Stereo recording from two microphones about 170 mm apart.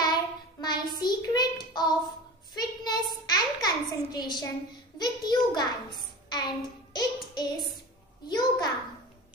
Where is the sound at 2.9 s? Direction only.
25° left (ahead or behind).